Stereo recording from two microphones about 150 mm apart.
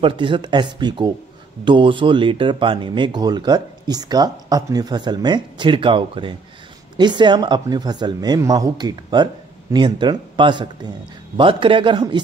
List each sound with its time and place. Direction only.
0.0 s speech: 35° right (ahead or behind)